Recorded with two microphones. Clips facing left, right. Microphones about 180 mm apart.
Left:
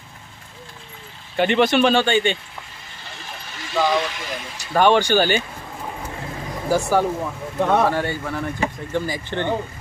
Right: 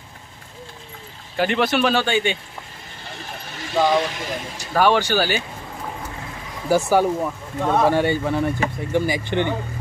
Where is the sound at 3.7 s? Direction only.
40° right (ahead or behind).